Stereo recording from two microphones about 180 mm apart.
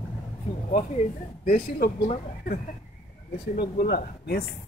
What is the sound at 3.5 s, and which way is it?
Speech, 60° left (ahead or behind).